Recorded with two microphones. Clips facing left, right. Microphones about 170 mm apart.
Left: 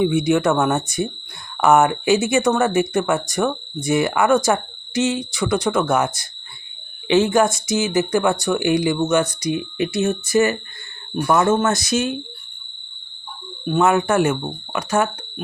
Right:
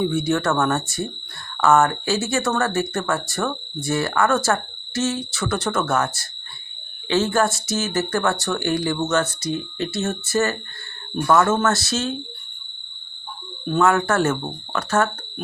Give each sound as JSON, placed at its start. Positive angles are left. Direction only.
{"t": 0.0, "sound": "speech", "side_deg": 15}
{"t": 13.7, "sound": "speech", "side_deg": 15}